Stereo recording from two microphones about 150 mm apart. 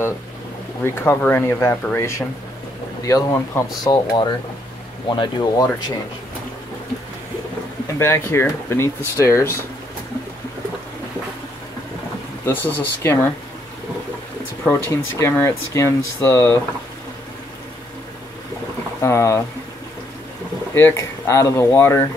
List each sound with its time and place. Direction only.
0.8 s speech: 15° left (ahead or behind)
8.0 s speech: 15° left (ahead or behind)
12.4 s speech: 15° left (ahead or behind)
14.6 s speech: 20° left (ahead or behind)
18.9 s speech: 20° left (ahead or behind)
20.7 s speech: 20° left (ahead or behind)